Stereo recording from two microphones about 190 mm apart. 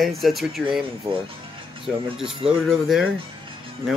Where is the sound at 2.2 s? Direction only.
30° right (ahead or behind).